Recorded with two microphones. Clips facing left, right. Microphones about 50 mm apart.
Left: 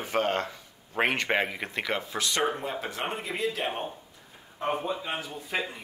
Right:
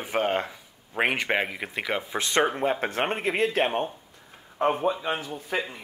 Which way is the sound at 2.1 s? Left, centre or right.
Right.